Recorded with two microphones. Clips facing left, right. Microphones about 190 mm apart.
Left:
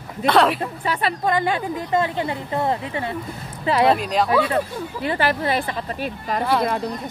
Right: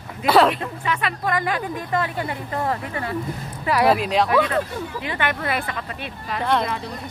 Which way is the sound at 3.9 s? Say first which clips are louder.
Even; centre (ahead or behind).